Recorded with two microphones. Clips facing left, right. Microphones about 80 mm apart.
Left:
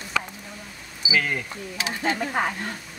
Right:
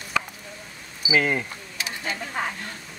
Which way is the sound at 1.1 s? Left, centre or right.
Right.